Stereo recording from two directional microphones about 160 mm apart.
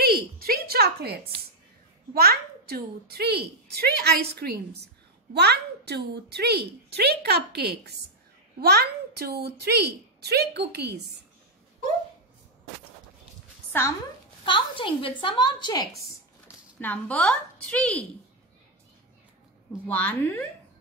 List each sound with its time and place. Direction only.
0.0 s a sound: 70° right (ahead or behind)
2.1 s a child's voice: 75° right (ahead or behind); by 11.0 s 90° right
13.7 s a sound: 15° left (ahead or behind)
14.4 s a woman's voice: 30° left (ahead or behind)
16.8 s a woman's voice: 10° left (ahead or behind)
19.9 s a woman's voice: 10° left (ahead or behind)